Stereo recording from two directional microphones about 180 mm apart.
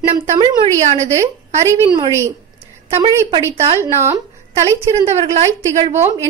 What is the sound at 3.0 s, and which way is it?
Speech, 30° right (ahead or behind).